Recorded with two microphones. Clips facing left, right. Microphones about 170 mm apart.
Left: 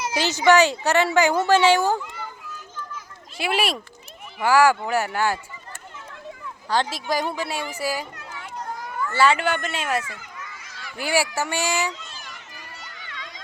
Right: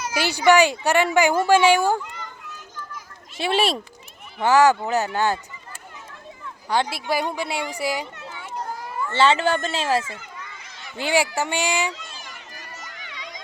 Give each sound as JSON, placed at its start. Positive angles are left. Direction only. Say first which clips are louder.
{"t": 0.2, "sound": "a child's voice", "louder": "even", "side_deg": -15}
{"t": 3.3, "sound": "speech", "louder": "right 3 dB", "side_deg": -25}
{"t": 6.7, "sound": "a child's voice", "louder": "right 1 dB", "side_deg": -10}
{"t": 8.4, "sound": "children playing", "louder": "right 1 dB", "side_deg": 0}
{"t": 9.0, "sound": "a child's voice", "louder": "right 1 dB", "side_deg": -25}
{"t": 13.1, "sound": "a sound", "louder": "right 1 dB", "side_deg": -15}